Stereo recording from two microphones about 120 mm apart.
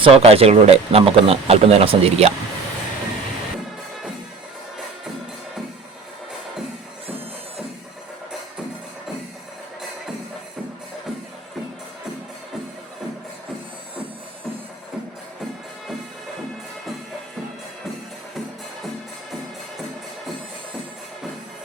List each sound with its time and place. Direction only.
0.0 s speech: 50° right (ahead or behind)